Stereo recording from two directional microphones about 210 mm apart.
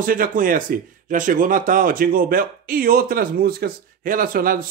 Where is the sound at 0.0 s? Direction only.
40° right (ahead or behind).